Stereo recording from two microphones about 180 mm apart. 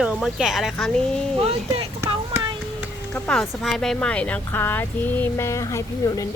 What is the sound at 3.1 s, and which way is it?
Speech, centre (ahead or behind).